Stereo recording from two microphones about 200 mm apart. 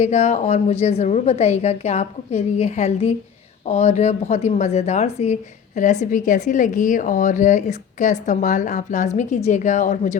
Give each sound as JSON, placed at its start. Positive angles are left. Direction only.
{"t": 0.0, "sound": "speech", "side_deg": 35}